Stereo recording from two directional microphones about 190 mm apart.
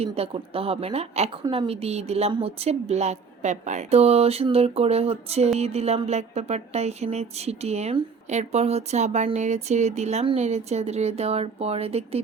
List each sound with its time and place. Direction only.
0.0 s a woman's voice: 30° right (ahead or behind)